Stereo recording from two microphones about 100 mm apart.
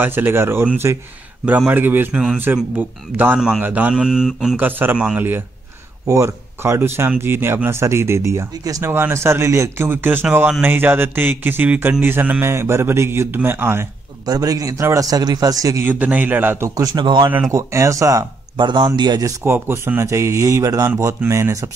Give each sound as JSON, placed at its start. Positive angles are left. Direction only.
{"t": 0.0, "sound": "a man's voice", "side_deg": -20}
{"t": 3.3, "sound": "a man's voice", "side_deg": -5}
{"t": 4.6, "sound": "a man's voice", "side_deg": -20}
{"t": 6.0, "sound": "speech", "side_deg": -30}
{"t": 14.2, "sound": "a man's voice", "side_deg": -40}
{"t": 15.8, "sound": "speech", "side_deg": -15}
{"t": 16.9, "sound": "speech", "side_deg": -50}
{"t": 17.5, "sound": "a man's voice", "side_deg": -30}
{"t": 18.6, "sound": "speech", "side_deg": -50}
{"t": 19.4, "sound": "speech", "side_deg": -25}